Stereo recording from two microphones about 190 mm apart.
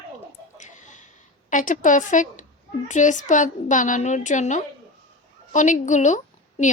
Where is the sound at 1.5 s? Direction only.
45° left (ahead or behind).